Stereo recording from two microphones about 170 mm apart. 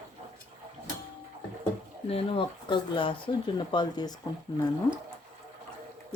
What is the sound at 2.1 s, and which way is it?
Speech, 30° left (ahead or behind).